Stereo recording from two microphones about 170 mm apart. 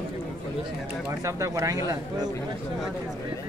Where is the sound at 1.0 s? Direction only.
20° right (ahead or behind).